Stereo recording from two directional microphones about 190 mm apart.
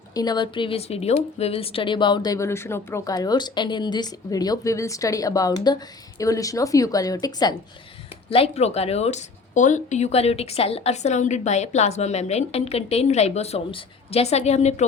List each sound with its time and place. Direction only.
0.1 s a woman's voice: 20° left (ahead or behind)
8.3 s speech: 30° left (ahead or behind)